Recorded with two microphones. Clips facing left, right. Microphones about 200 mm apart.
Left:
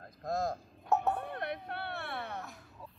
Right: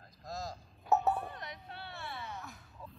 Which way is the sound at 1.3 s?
60° left (ahead or behind).